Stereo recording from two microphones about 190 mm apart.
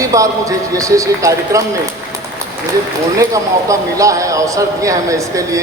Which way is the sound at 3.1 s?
15° right (ahead or behind).